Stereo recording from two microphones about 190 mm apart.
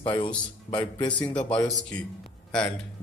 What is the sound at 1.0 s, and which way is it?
Speech, 5° left (ahead or behind).